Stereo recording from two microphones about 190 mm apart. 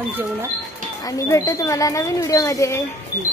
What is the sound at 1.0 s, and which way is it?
Speech, 20° left (ahead or behind).